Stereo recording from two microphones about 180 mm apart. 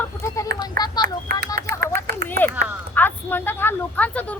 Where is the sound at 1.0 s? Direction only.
55° right (ahead or behind).